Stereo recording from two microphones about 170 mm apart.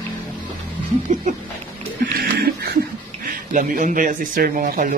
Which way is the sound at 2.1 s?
65° right (ahead or behind).